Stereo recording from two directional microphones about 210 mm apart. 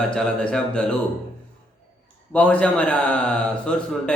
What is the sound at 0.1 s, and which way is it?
Speech, 5° left (ahead or behind).